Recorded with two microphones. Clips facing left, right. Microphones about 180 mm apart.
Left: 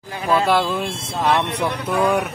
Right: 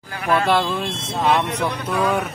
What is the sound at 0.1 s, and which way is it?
Speech, 25° left (ahead or behind).